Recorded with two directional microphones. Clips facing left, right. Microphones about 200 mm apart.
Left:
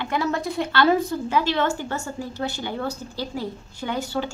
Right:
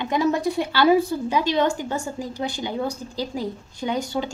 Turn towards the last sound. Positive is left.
turn(degrees=-15)  # may be behind; listen again after turning